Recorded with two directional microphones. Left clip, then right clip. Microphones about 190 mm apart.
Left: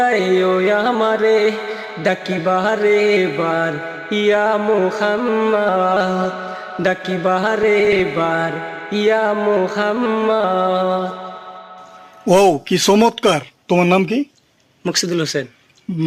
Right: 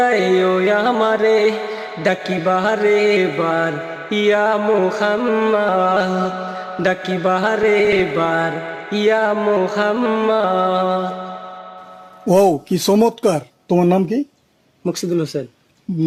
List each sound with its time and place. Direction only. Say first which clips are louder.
0.0 s music: even; centre (ahead or behind)
12.5 s music: left 2 dB; centre (ahead or behind)
14.9 s speech: left 4 dB; 15° right (ahead or behind)